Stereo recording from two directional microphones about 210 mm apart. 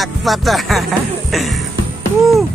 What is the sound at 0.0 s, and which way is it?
Music, centre (ahead or behind).